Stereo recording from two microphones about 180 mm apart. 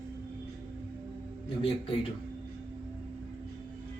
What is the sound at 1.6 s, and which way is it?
Speech, 30° left (ahead or behind).